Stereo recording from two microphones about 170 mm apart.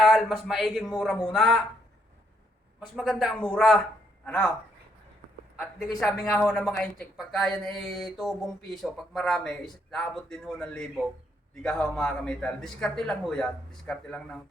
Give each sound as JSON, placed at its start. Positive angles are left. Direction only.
{"t": 0.0, "sound": "a woman's voice", "side_deg": 0}
{"t": 2.9, "sound": "a woman's voice", "side_deg": 0}
{"t": 6.0, "sound": "a woman's voice", "side_deg": 5}